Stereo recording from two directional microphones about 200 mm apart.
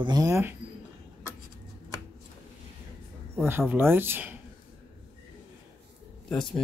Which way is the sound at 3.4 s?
10° right (ahead or behind).